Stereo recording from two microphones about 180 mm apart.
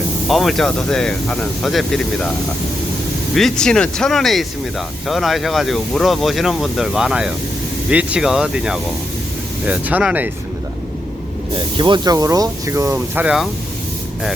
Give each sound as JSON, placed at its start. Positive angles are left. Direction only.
{"t": 0.3, "sound": "speech", "side_deg": 0}
{"t": 3.3, "sound": "speech", "side_deg": 5}
{"t": 11.5, "sound": "speech", "side_deg": -25}